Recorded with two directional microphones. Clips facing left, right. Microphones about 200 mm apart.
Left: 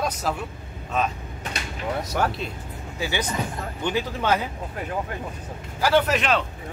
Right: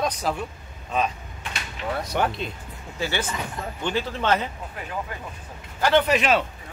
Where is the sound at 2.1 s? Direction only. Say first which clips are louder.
Right 1 dB; centre (ahead or behind).